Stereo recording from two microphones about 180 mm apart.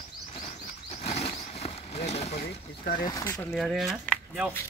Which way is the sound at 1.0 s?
35° left (ahead or behind).